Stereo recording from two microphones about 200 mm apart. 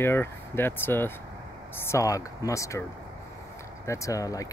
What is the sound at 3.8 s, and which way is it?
Speech, 15° left (ahead or behind).